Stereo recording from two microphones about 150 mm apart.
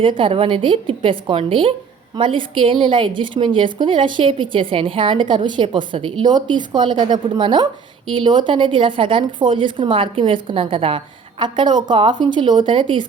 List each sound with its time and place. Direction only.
0.0 s a woman's voice: 35° right (ahead or behind)